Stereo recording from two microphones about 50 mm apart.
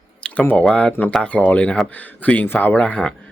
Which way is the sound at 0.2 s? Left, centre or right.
Left.